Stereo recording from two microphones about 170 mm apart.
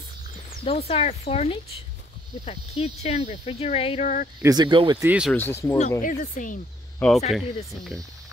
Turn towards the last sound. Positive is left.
turn(degrees=0)  # may be behind; listen again after turning